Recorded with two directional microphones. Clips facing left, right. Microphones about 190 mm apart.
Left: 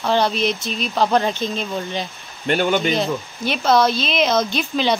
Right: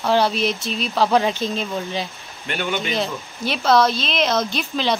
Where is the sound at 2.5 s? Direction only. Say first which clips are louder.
Left 6 dB; 40° left (ahead or behind).